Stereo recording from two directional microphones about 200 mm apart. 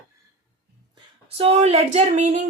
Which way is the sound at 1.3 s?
30° right (ahead or behind).